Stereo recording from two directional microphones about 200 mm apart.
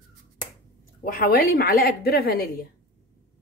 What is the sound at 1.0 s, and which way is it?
A woman's voice, 45° left (ahead or behind).